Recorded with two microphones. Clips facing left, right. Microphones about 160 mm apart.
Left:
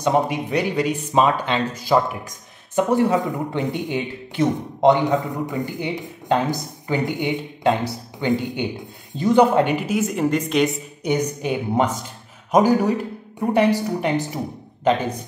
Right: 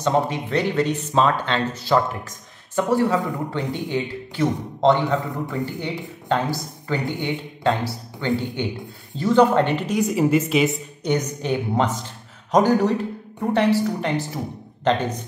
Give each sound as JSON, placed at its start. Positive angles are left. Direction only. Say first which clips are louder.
{"t": 0.0, "sound": "speech", "louder": "left 1 dB", "side_deg": 10}
{"t": 11.1, "sound": "speech", "louder": "left 1 dB", "side_deg": 10}